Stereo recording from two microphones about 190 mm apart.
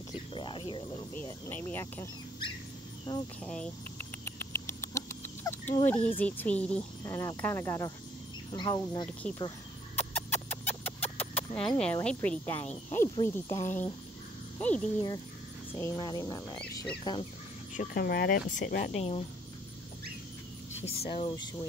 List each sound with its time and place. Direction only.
0.3 s a sound: 25° left (ahead or behind)
1.1 s speech: 10° left (ahead or behind)
3.1 s speech: 20° left (ahead or behind)
3.4 s speech: 5° left (ahead or behind)
4.2 s frog: 10° left (ahead or behind)
8.5 s speech: 20° left (ahead or behind)
9.9 s a sound: 10° left (ahead or behind)
13.1 s speech: 15° left (ahead or behind)
15.8 s speech: 20° left (ahead or behind)
17.7 s speech: 50° left (ahead or behind)
18.9 s speech: 30° left (ahead or behind)
21.1 s speech: 25° left (ahead or behind)